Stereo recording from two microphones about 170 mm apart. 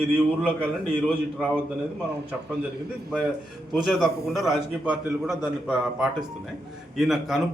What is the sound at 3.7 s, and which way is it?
Speech, centre (ahead or behind).